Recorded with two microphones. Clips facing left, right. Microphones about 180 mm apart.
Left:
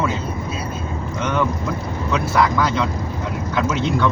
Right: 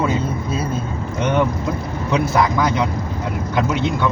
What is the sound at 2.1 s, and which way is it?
Speech, 20° right (ahead or behind).